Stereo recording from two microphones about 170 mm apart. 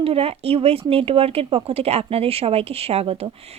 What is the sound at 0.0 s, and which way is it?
Speech, 35° right (ahead or behind).